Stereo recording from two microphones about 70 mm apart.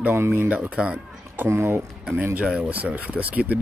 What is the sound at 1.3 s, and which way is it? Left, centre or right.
Speech, right.